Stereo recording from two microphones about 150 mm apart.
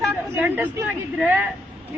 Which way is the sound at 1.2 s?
10° right (ahead or behind).